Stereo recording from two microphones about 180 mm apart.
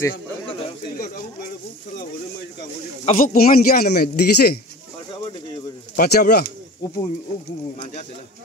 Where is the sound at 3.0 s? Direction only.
50° left (ahead or behind).